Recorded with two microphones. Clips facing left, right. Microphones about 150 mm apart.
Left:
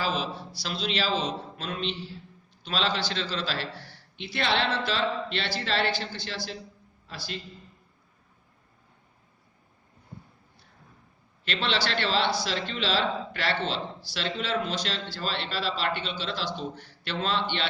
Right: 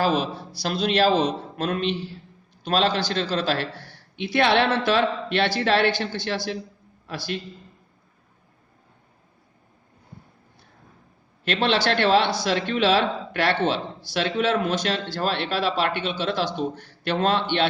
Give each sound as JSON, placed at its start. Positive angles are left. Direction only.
{"t": 0.0, "sound": "a man's voice", "side_deg": -50}
{"t": 11.4, "sound": "a man's voice", "side_deg": -50}